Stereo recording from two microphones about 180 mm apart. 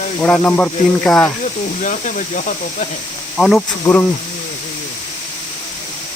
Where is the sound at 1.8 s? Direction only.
45° left (ahead or behind).